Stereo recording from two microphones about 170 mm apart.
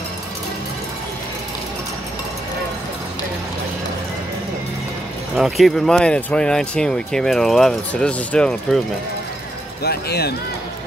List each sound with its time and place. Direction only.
5.3 s speech: centre (ahead or behind)
9.8 s speech: 70° left (ahead or behind)